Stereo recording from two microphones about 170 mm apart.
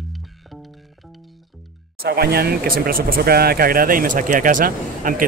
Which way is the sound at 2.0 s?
65° right (ahead or behind).